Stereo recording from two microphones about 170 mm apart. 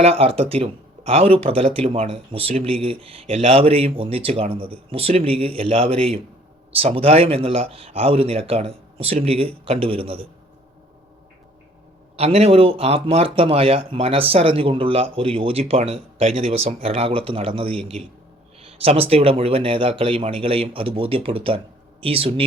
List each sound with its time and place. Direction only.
0.0 s speech: 35° right (ahead or behind)
12.1 s speech: 35° right (ahead or behind)